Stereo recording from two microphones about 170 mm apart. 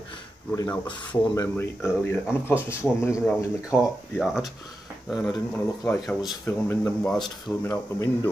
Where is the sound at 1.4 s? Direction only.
15° left (ahead or behind).